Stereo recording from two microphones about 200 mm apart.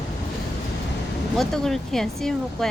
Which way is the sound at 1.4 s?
Centre (ahead or behind).